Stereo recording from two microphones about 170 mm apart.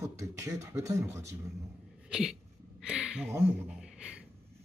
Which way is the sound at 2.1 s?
5° right (ahead or behind).